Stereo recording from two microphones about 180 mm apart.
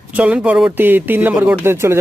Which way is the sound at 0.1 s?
5° right (ahead or behind).